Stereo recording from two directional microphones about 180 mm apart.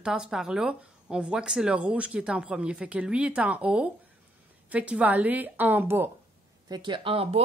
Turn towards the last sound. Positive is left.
turn(degrees=-30)  # may be behind; listen again after turning